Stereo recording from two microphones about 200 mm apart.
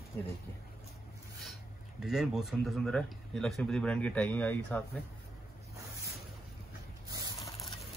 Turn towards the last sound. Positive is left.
turn(degrees=-20)  # may be behind; listen again after turning